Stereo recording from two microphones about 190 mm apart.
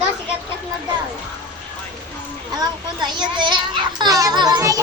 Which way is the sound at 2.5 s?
20° right (ahead or behind).